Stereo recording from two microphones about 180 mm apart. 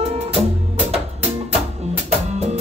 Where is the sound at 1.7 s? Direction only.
35° right (ahead or behind).